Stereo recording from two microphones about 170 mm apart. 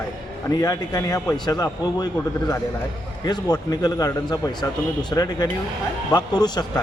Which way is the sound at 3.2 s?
25° left (ahead or behind).